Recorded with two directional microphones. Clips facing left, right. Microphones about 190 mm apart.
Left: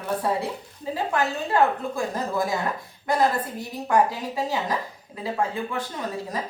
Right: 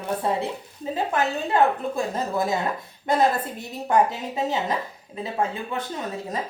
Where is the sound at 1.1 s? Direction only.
20° right (ahead or behind).